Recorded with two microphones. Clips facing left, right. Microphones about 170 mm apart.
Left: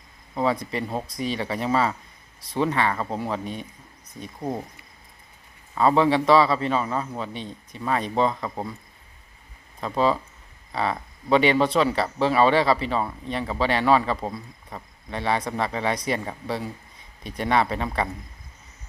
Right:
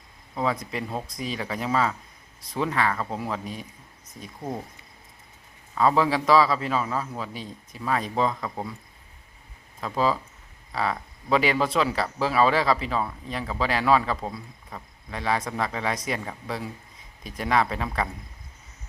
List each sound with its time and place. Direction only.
0.3 s speech: centre (ahead or behind)
4.4 s speech: 15° left (ahead or behind)
5.7 s speech: centre (ahead or behind)
9.8 s speech: centre (ahead or behind)